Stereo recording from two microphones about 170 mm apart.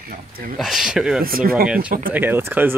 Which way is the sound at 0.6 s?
Centre (ahead or behind).